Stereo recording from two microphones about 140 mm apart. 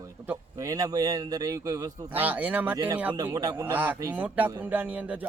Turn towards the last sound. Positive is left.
turn(degrees=-10)  # may be behind; listen again after turning